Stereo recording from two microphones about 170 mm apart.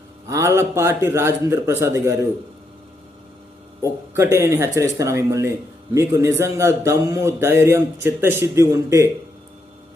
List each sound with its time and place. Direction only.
0.3 s speech: 15° right (ahead or behind)
4.1 s speech: 15° right (ahead or behind)